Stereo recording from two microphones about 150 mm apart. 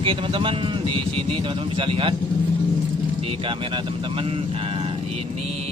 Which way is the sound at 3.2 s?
35° right (ahead or behind).